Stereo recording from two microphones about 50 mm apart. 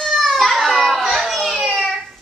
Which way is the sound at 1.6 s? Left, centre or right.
Centre.